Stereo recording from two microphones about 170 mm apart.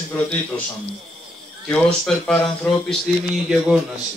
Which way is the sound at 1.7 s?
5° left (ahead or behind).